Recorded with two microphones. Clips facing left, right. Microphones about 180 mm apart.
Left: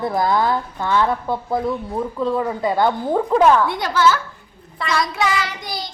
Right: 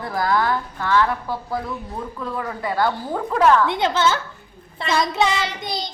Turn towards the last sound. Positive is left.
turn(degrees=-20)  # may be behind; listen again after turning